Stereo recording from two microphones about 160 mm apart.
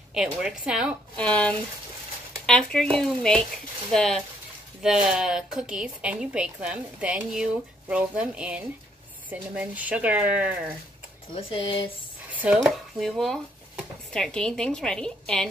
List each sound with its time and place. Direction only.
0.1 s speech: 5° right (ahead or behind)
1.1 s speech: 5° left (ahead or behind); by 10.5 s 10° right (ahead or behind)
11.3 s speech: 35° left (ahead or behind)
12.3 s speech: 10° right (ahead or behind)